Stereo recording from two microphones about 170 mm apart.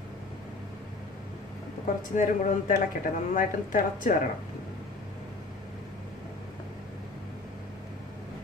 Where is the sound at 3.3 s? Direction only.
50° left (ahead or behind).